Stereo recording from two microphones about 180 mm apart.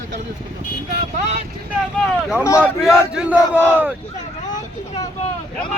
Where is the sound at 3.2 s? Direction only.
5° right (ahead or behind).